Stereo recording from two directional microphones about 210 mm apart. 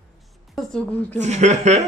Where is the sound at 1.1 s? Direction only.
35° right (ahead or behind).